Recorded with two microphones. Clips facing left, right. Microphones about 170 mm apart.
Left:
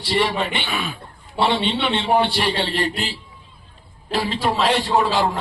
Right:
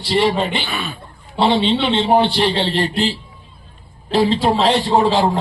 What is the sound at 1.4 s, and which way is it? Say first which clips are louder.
A man's voice: right 4 dB; 25° right (ahead or behind).